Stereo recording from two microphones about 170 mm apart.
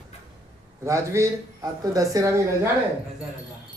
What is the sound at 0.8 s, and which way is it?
Speech, 15° right (ahead or behind).